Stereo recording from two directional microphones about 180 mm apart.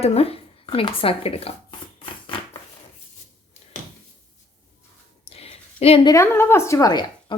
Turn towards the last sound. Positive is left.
turn(degrees=20)  # may be behind; listen again after turning